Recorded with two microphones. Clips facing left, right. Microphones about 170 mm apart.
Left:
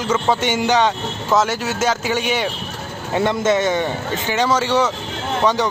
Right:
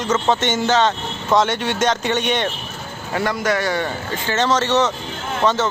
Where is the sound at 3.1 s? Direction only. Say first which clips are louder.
Left 3 dB; 20° left (ahead or behind).